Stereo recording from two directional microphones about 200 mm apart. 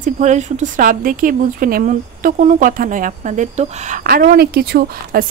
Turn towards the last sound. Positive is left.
turn(degrees=-50)  # may be behind; listen again after turning